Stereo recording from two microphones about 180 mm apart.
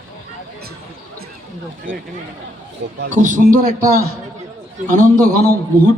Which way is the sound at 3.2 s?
45° right (ahead or behind).